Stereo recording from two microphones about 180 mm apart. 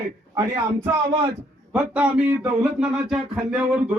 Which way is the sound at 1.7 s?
5° right (ahead or behind).